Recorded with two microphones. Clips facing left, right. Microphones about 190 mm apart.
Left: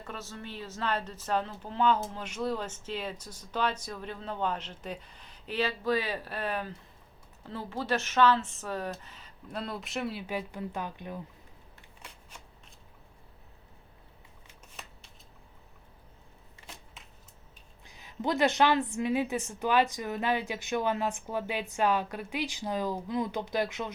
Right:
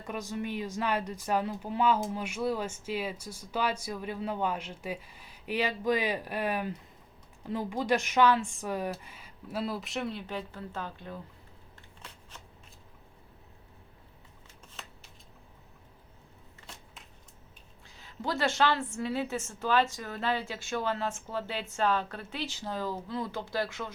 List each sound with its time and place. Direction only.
0.0 s speech: 15° right (ahead or behind); by 11.2 s 15° left (ahead or behind)
17.8 s a woman's voice: 15° left (ahead or behind)